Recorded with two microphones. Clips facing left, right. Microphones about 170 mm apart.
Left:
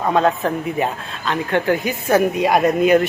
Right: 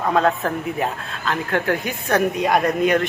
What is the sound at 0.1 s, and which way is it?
A man's voice, centre (ahead or behind).